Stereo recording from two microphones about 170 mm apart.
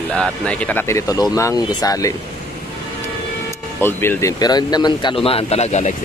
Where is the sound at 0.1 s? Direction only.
5° left (ahead or behind); by 2.1 s 20° left (ahead or behind).